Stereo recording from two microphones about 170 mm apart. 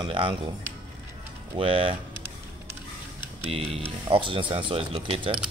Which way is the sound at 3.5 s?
35° right (ahead or behind).